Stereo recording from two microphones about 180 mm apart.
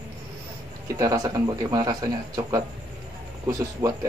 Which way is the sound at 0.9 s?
20° right (ahead or behind).